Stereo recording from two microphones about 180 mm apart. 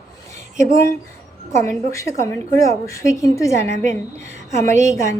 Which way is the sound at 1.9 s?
15° left (ahead or behind).